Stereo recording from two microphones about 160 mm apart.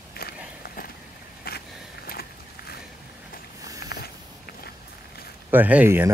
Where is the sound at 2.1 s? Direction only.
75° left (ahead or behind).